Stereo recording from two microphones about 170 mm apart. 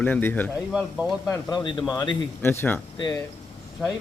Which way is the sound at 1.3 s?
25° left (ahead or behind).